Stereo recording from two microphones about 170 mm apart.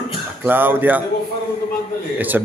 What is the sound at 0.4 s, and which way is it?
Speech, 10° right (ahead or behind).